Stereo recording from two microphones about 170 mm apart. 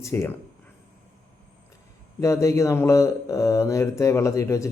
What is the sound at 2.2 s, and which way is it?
Speech, 20° left (ahead or behind).